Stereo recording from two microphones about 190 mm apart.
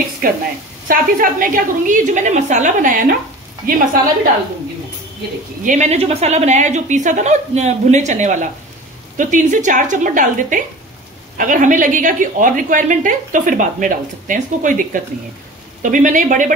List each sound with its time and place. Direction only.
0.2 s a woman's voice: 50° right (ahead or behind)
5.6 s a woman's voice: 40° right (ahead or behind)